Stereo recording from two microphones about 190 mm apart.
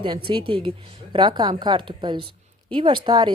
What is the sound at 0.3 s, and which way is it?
Speech, 25° right (ahead or behind).